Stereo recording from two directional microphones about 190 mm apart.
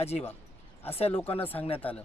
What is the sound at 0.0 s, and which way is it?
Speech, 35° left (ahead or behind).